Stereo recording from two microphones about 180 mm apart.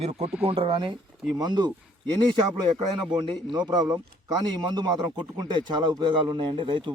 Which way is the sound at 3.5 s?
25° right (ahead or behind).